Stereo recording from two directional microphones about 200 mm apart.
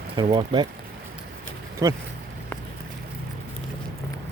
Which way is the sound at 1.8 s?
15° right (ahead or behind).